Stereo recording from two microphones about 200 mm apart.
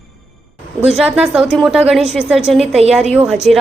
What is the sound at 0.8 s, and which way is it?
Speech, 5° right (ahead or behind).